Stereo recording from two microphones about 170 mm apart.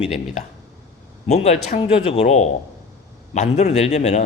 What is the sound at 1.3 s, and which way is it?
Speech, 40° left (ahead or behind).